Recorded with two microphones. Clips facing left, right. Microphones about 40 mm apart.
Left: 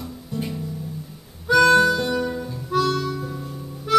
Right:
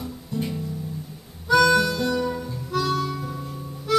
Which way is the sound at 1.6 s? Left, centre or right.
Centre.